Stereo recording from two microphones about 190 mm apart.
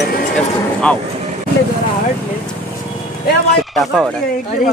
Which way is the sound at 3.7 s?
Centre (ahead or behind).